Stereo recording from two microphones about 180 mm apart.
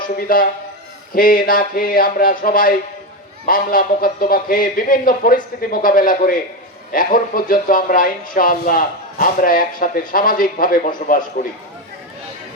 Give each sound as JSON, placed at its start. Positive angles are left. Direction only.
{"t": 0.2, "sound": "speech", "side_deg": 50}